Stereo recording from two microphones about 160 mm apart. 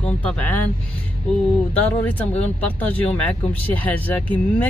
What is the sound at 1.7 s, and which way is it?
Speech, 10° left (ahead or behind).